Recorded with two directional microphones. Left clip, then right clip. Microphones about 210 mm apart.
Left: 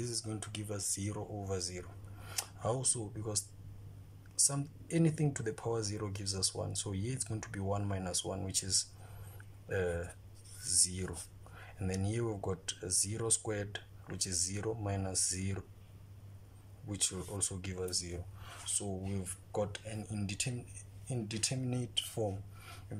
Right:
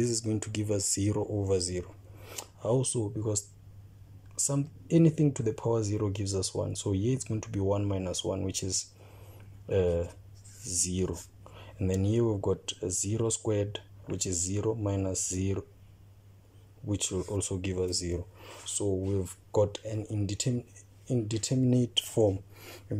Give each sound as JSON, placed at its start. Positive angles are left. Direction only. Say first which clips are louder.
{"t": 0.0, "sound": "speech", "louder": "right 10 dB", "side_deg": -30}
{"t": 16.8, "sound": "speech", "louder": "right 6 dB", "side_deg": -10}